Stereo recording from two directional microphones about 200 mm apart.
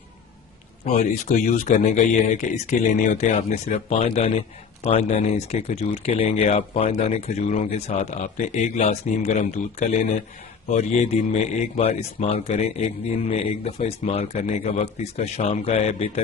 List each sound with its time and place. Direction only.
0.8 s a man's voice: 40° left (ahead or behind)